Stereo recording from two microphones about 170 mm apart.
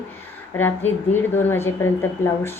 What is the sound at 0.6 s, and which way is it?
A woman's voice, 10° left (ahead or behind).